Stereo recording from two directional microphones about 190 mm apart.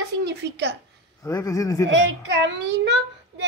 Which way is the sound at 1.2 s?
15° left (ahead or behind).